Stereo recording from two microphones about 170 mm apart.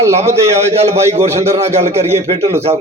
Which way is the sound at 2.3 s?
20° right (ahead or behind).